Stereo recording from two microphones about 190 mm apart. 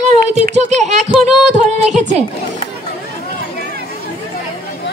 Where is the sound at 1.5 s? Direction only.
35° right (ahead or behind).